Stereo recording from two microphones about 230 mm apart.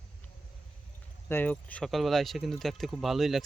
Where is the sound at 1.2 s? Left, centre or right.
Centre.